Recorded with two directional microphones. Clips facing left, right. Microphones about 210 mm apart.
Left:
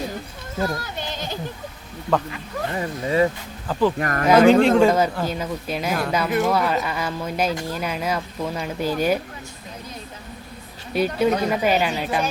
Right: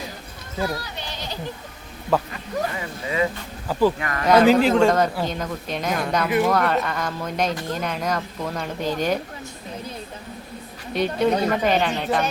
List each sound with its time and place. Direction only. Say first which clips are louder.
0.8 s a sound: left 3 dB; 50° left (ahead or behind)
2.7 s speech: left 5 dB; 35° left (ahead or behind)
3.7 s speech: right 1 dB; 10° right (ahead or behind)
4.0 s speech: left 4 dB; 45° left (ahead or behind)
4.3 s speech: left 2 dB; centre (ahead or behind)
10.9 s speech: left 1 dB; 5° left (ahead or behind)